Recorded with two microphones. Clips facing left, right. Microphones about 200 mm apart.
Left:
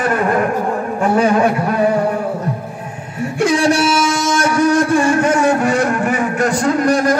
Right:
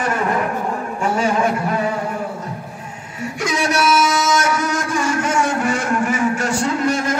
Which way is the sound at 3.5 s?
30° left (ahead or behind).